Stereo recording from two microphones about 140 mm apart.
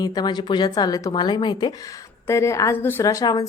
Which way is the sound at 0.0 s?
30° left (ahead or behind).